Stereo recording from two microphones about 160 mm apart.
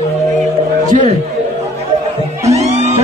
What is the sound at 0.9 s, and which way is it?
Speech, 50° right (ahead or behind).